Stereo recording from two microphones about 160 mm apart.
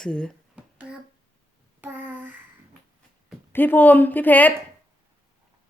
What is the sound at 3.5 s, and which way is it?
A woman's voice, 10° left (ahead or behind).